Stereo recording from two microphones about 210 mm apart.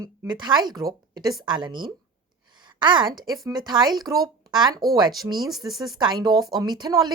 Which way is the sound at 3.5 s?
20° right (ahead or behind).